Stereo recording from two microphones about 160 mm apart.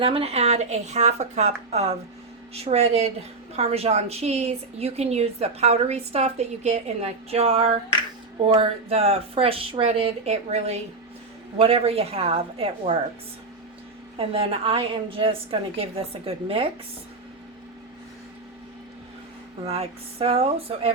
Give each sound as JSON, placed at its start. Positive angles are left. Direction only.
{"t": 0.0, "sound": "a woman's voice", "side_deg": -35}
{"t": 14.2, "sound": "a woman's voice", "side_deg": -35}
{"t": 19.6, "sound": "a woman's voice", "side_deg": -40}